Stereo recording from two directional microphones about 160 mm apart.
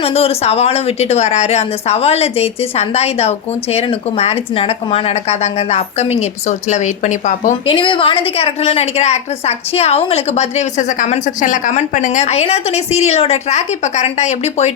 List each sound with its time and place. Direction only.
0.0 s a woman's voice: 35° left (ahead or behind)
7.7 s a woman's voice: 30° left (ahead or behind)